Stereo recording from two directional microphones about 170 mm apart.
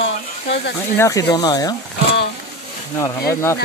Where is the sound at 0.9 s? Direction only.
15° left (ahead or behind).